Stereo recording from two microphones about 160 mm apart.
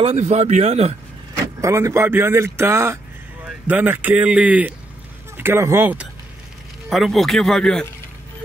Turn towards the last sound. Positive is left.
turn(degrees=5)  # may be behind; listen again after turning